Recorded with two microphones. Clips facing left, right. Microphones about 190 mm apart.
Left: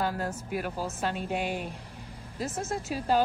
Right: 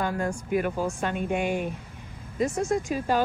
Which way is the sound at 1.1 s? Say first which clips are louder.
Right 5 dB; 55° right (ahead or behind).